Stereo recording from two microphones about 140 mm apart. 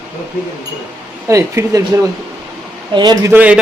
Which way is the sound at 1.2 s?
25° right (ahead or behind).